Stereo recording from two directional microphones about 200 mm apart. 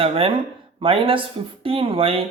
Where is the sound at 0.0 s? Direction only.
30° right (ahead or behind).